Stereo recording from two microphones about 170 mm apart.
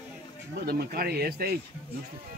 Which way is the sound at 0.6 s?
65° right (ahead or behind).